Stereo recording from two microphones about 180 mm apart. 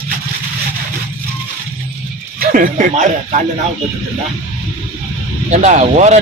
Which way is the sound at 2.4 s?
50° right (ahead or behind).